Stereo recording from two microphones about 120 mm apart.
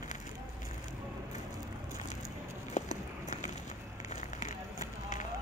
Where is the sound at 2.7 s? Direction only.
85° left.